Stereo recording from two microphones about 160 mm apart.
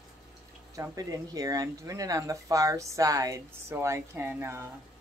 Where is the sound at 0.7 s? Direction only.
20° right (ahead or behind).